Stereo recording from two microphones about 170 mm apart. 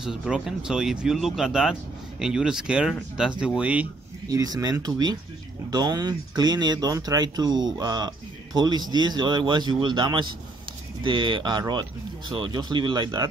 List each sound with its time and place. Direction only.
0.0 s speech: 5° right (ahead or behind)
4.3 s speech: 20° right (ahead or behind)